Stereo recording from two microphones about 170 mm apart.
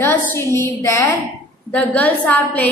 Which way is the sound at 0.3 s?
15° left (ahead or behind).